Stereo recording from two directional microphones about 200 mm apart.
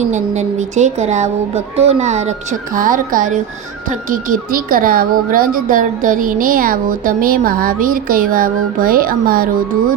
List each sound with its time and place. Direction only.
0.0 s speech: 35° right (ahead or behind)